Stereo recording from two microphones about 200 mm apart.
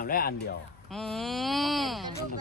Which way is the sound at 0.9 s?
Centre (ahead or behind).